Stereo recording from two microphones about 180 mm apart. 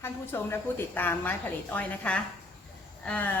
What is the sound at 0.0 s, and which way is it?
A woman's voice, 10° left (ahead or behind).